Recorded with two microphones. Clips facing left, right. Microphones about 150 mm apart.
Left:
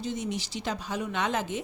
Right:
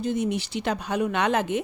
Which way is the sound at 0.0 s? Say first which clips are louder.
Right 7 dB; 55° right (ahead or behind).